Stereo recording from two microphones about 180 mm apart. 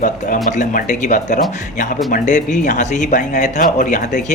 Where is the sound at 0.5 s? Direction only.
45° left (ahead or behind).